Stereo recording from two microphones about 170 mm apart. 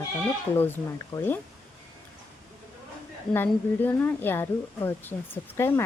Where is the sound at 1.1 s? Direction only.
15° left (ahead or behind).